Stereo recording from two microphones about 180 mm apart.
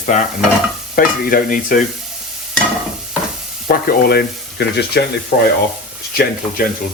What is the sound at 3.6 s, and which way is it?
Frying, 55° left (ahead or behind).